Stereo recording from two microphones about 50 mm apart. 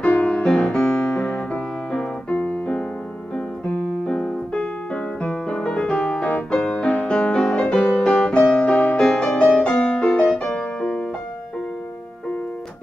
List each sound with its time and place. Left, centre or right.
0.0 s music: left
2.2 s piano: left
4.0 s piano: centre
4.6 s piano: centre
6.5 s music: left